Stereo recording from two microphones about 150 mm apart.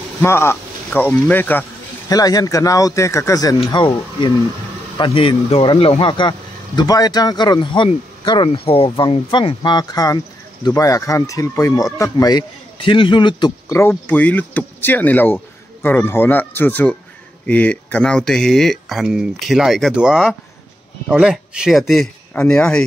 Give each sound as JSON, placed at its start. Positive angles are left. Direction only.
{"t": 0.2, "sound": "speech", "side_deg": 15}
{"t": 2.0, "sound": "speech", "side_deg": 25}
{"t": 13.7, "sound": "speech", "side_deg": 15}